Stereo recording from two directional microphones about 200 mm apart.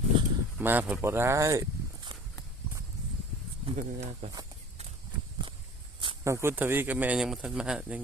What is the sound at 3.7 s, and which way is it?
Speech, 35° right (ahead or behind).